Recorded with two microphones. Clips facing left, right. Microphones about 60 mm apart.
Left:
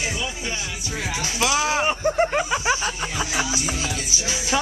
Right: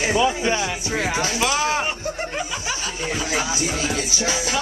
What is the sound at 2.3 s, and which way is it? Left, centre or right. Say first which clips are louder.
Snicker: left 6 dB; left.